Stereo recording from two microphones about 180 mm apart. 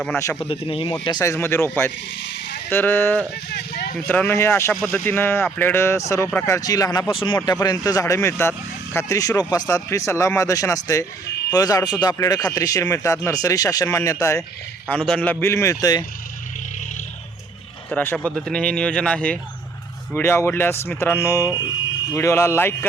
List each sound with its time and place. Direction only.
0.4 s speech: 30° left (ahead or behind)
1.0 s speech: 20° left (ahead or behind)
3.5 s a sound: 60° left (ahead or behind)
3.9 s speech: 10° left (ahead or behind)
14.8 s speech: 5° left (ahead or behind); by 16.0 s 20° left (ahead or behind)
17.9 s speech: 10° left (ahead or behind)